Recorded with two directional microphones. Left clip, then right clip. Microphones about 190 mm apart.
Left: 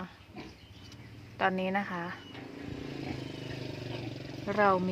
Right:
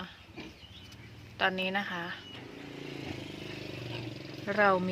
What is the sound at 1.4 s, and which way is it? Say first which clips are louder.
Speech: even; 20° left (ahead or behind).